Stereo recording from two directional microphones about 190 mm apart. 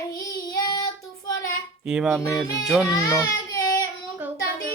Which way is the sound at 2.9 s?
15° left (ahead or behind).